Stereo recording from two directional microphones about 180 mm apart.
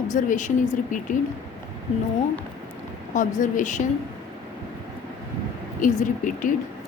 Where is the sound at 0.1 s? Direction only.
45° left (ahead or behind).